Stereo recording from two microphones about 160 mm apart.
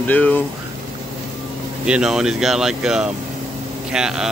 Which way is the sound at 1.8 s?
5° right (ahead or behind).